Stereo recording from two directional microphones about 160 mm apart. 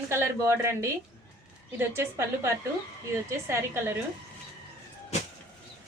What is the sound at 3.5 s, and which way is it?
Speech, 15° right (ahead or behind).